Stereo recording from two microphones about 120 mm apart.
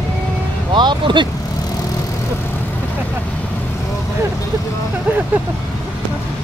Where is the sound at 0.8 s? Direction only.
40° right (ahead or behind).